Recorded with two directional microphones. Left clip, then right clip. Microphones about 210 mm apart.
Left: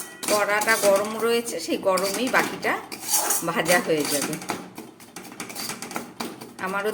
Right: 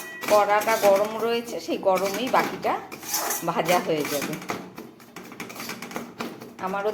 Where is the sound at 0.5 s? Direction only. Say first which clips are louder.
Even; 15° left (ahead or behind).